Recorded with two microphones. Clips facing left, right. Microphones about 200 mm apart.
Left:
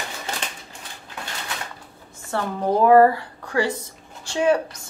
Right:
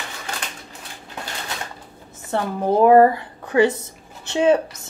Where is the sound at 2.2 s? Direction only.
20° right (ahead or behind).